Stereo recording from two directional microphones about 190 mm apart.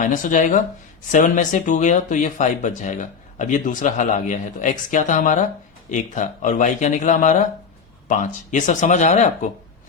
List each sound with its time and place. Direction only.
0.0 s speech: 45° left (ahead or behind)